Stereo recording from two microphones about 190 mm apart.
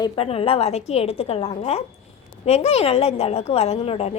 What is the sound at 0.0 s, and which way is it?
A woman's voice, 30° left (ahead or behind).